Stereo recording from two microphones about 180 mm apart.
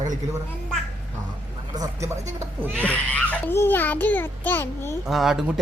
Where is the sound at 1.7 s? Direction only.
20° right (ahead or behind).